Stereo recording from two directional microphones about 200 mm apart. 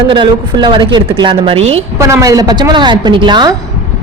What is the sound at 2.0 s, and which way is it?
Speech, 15° right (ahead or behind).